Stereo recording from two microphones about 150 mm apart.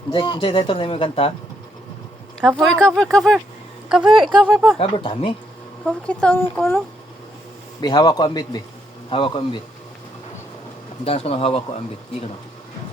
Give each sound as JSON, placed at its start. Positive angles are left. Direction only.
{"t": 0.1, "sound": "speech", "side_deg": 35}
{"t": 2.6, "sound": "a woman's voice", "side_deg": 5}
{"t": 4.8, "sound": "speech", "side_deg": 40}
{"t": 5.8, "sound": "a woman's voice", "side_deg": 5}
{"t": 7.8, "sound": "a man's voice", "side_deg": 30}
{"t": 11.0, "sound": "speech", "side_deg": 40}